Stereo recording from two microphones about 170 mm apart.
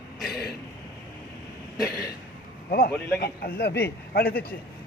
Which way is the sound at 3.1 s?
65° left (ahead or behind).